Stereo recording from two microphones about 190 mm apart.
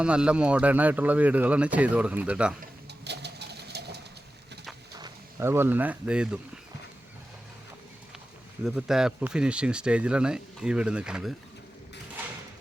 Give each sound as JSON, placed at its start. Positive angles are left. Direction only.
{"t": 0.0, "sound": "speech", "side_deg": -5}
{"t": 2.6, "sound": "patter", "side_deg": -60}
{"t": 4.9, "sound": "speech", "side_deg": -15}
{"t": 8.6, "sound": "speech", "side_deg": 0}